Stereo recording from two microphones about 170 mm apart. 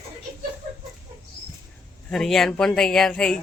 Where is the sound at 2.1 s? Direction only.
Centre (ahead or behind).